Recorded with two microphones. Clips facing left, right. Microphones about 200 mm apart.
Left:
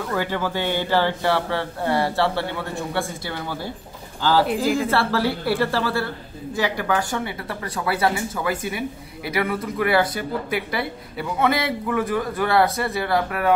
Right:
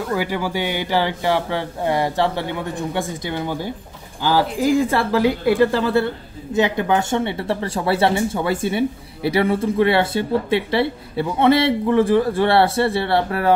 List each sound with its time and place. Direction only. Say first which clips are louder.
0.1 s speech: right 2 dB; 10° right (ahead or behind); by 13.5 s 30° right (ahead or behind)